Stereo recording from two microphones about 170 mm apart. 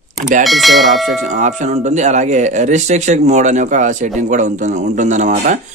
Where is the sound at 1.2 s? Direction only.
45° right (ahead or behind).